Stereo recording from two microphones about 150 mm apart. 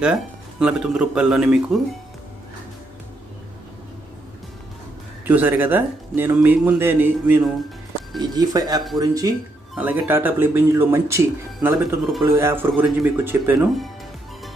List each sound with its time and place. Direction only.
0.0 s speech: 5° right (ahead or behind)
5.3 s speech: 10° right (ahead or behind)
8.2 s speech: 25° right (ahead or behind)
9.8 s speech: 10° right (ahead or behind)